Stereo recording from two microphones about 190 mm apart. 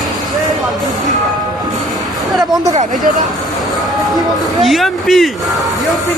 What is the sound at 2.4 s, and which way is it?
Speech, 20° right (ahead or behind).